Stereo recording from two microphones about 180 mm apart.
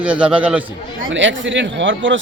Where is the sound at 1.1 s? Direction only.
90° right.